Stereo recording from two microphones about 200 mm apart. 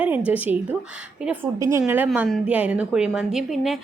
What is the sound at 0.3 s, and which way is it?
A woman's voice, 10° right (ahead or behind).